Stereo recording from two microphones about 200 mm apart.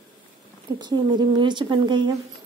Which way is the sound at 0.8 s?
20° right (ahead or behind).